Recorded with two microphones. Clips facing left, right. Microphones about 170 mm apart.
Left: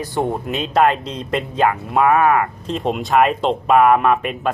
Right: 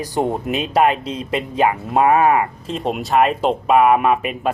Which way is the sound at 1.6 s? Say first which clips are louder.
Even; 20° right (ahead or behind).